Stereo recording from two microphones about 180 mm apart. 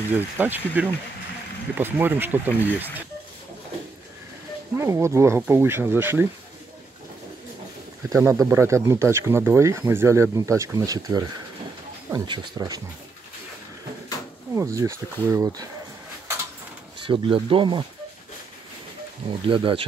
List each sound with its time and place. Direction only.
0.1 s speech: 10° right (ahead or behind)
4.7 s speech: 15° right (ahead or behind)
8.1 s speech: 15° right (ahead or behind)
14.5 s speech: 15° right (ahead or behind)
17.0 s speech: 30° right (ahead or behind)
19.4 s speech: 30° right (ahead or behind)